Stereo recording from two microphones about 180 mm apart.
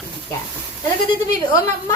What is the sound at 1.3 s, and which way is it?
Speech, 20° left (ahead or behind).